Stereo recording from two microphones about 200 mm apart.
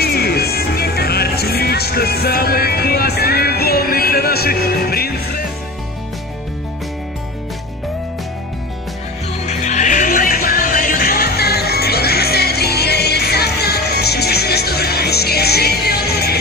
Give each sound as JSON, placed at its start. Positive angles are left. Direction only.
{"t": 0.0, "sound": "music", "side_deg": 50}
{"t": 9.5, "sound": "music", "side_deg": 35}